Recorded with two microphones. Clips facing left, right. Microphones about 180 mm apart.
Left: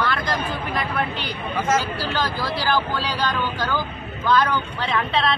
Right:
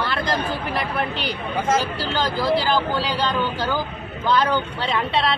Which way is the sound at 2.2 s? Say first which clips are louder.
Right 7 dB; 25° right (ahead or behind).